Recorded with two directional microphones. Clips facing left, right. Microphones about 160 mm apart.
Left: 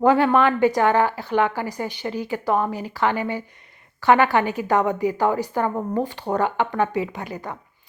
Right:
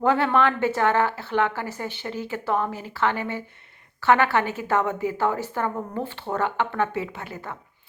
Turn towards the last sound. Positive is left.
turn(degrees=15)  # may be behind; listen again after turning